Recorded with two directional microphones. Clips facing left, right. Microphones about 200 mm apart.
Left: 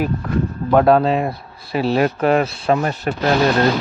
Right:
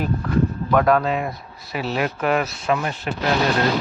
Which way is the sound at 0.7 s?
30° left (ahead or behind).